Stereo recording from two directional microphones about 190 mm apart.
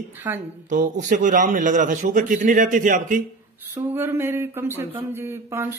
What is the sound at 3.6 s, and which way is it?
Speech, 10° right (ahead or behind).